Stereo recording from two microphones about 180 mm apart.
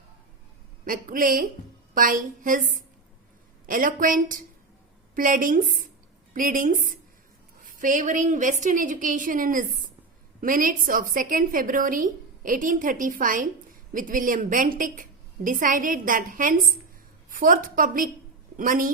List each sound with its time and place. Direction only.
0.9 s a woman's voice: 50° right (ahead or behind)
3.7 s a woman's voice: 50° right (ahead or behind)